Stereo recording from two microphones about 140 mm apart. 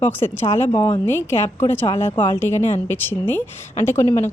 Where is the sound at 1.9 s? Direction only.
35° left (ahead or behind).